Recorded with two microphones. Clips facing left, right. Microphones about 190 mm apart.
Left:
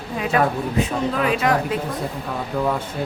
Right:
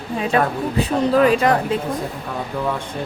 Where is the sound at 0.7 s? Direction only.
35° right (ahead or behind).